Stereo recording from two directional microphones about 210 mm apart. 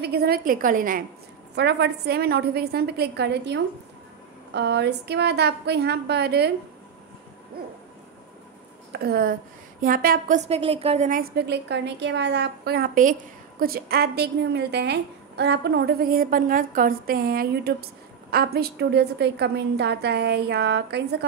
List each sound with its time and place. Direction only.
0.0 s a woman's voice: 50° right (ahead or behind)
1.5 s a woman's voice: 55° right (ahead or behind)
8.9 s a woman's voice: 45° right (ahead or behind)